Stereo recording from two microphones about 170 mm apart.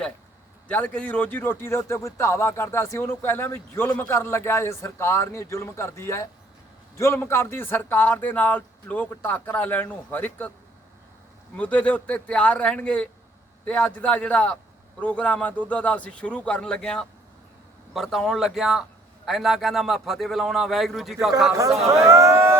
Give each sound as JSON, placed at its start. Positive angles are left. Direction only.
{"t": 0.7, "sound": "a man's voice", "side_deg": 10}
{"t": 11.5, "sound": "a man's voice", "side_deg": 10}
{"t": 22.1, "sound": "a sound", "side_deg": -15}